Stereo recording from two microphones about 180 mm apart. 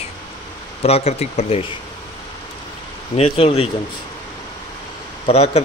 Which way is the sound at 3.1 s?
35° left (ahead or behind).